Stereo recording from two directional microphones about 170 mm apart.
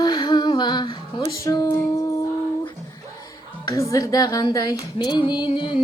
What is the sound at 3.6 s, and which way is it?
Music, 20° left (ahead or behind).